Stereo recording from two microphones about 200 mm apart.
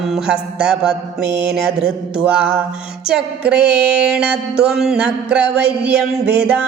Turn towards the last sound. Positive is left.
turn(degrees=-5)  # may be behind; listen again after turning